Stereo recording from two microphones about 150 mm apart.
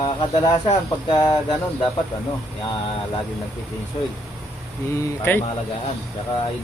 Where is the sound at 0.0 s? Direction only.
30° left (ahead or behind).